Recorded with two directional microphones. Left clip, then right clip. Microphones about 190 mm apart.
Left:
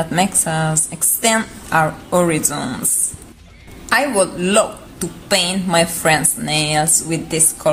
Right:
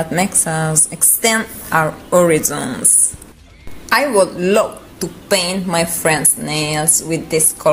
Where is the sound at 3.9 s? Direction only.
10° right (ahead or behind).